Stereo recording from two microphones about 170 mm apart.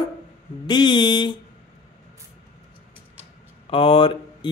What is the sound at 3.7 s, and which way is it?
Speech, 30° left (ahead or behind).